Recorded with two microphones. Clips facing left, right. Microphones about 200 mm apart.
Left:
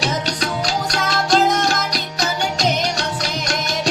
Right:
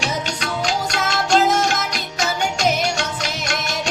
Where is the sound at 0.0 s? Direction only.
35° left (ahead or behind).